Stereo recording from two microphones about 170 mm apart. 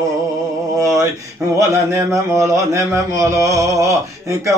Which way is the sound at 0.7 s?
20° right (ahead or behind).